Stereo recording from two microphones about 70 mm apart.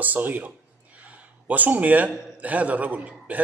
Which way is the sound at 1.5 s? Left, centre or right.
Right.